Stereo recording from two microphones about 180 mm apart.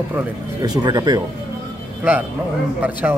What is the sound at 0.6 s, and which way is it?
Speech, 20° right (ahead or behind).